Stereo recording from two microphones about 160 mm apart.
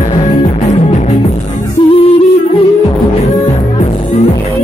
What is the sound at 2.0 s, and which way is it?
Music, 35° left (ahead or behind).